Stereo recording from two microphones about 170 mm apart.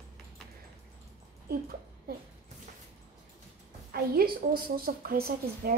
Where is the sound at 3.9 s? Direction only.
60° right (ahead or behind).